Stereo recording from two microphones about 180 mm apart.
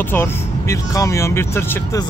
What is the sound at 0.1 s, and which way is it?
Speech, 15° left (ahead or behind).